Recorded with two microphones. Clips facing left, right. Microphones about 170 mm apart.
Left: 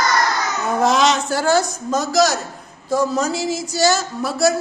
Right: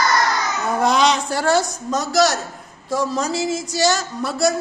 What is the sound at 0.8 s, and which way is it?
Speech, centre (ahead or behind).